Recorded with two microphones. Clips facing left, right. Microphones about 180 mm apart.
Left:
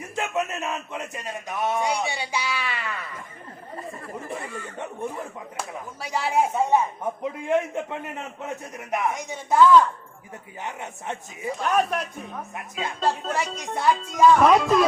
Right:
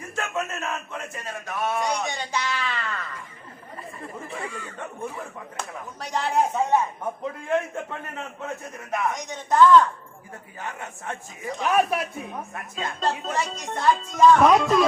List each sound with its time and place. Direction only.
0.2 s a man's voice: 15° left (ahead or behind)
4.8 s a man's voice: 20° left (ahead or behind)
5.5 s a man's voice: 5° left (ahead or behind)
10.6 s a man's voice: 20° left (ahead or behind)
11.6 s speech: 10° right (ahead or behind)
12.5 s a man's voice: 10° left (ahead or behind)